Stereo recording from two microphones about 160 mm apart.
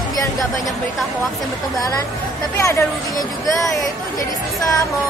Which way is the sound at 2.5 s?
20° left (ahead or behind).